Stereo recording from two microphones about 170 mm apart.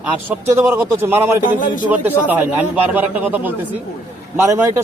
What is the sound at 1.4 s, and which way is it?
Speech, 50° left (ahead or behind).